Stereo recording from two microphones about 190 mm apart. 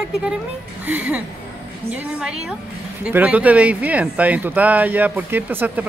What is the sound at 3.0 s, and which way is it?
Speech, 10° right (ahead or behind).